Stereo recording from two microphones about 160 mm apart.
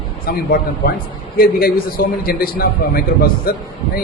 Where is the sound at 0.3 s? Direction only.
70° left (ahead or behind).